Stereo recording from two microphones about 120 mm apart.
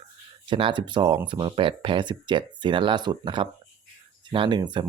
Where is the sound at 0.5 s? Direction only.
45° right (ahead or behind).